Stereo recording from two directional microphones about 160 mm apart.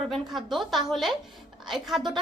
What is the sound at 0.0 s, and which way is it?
A woman's voice, centre (ahead or behind).